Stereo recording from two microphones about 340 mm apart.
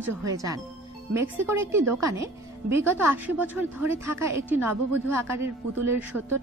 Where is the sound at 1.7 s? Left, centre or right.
Right.